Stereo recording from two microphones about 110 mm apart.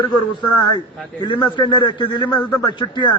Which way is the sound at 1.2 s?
45° left (ahead or behind).